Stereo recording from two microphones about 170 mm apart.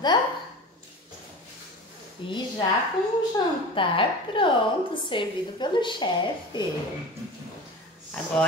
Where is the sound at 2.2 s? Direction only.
30° left (ahead or behind).